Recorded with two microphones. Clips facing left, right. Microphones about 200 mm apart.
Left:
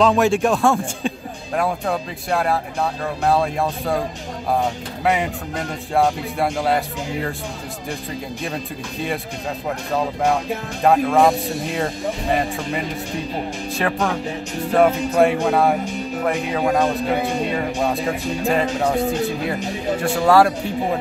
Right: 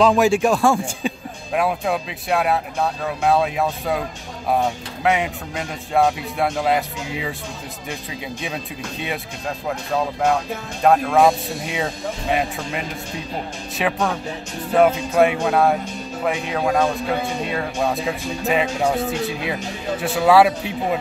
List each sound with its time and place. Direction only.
0.0 s speech: centre (ahead or behind)
5.0 s speech: centre (ahead or behind)
10.8 s speech: centre (ahead or behind)
16.8 s speech: 15° left (ahead or behind)
17.6 s speech: centre (ahead or behind)